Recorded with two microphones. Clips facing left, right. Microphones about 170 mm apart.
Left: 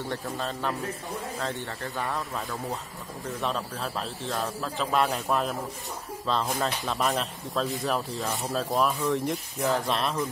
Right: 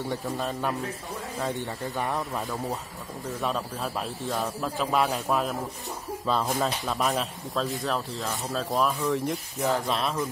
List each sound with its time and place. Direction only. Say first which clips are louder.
0.5 s speech: right 1 dB; 10° right (ahead or behind)
3.3 s speech: right 1 dB; 5° right (ahead or behind)